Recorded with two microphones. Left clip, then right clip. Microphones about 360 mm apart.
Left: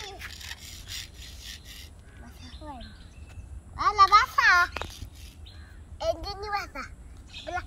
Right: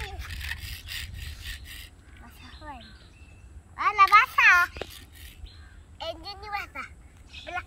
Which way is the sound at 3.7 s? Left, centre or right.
Centre.